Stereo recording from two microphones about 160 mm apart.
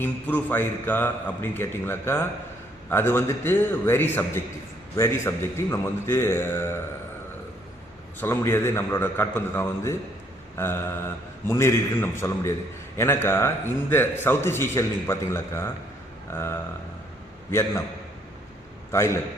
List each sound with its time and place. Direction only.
0.0 s a man's voice: 10° left (ahead or behind)
8.2 s a man's voice: 15° left (ahead or behind)
18.9 s a man's voice: 15° left (ahead or behind)